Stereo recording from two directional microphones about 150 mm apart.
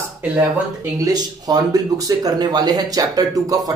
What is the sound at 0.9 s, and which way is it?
Speech, 25° right (ahead or behind).